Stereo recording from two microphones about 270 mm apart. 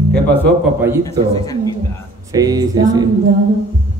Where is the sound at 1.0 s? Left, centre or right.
Centre.